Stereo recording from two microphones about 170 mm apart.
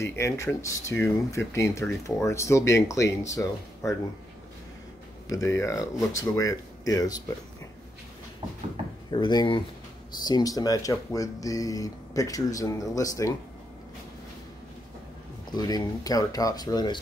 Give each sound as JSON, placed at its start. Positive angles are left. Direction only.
{"t": 0.0, "sound": "speech", "side_deg": 15}
{"t": 5.3, "sound": "speech", "side_deg": 20}
{"t": 9.1, "sound": "speech", "side_deg": 25}
{"t": 15.5, "sound": "speech", "side_deg": 20}